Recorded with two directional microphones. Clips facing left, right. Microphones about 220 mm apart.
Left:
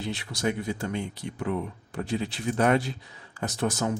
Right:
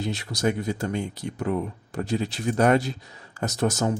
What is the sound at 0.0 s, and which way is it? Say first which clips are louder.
Speech: right 3 dB; 40° right (ahead or behind).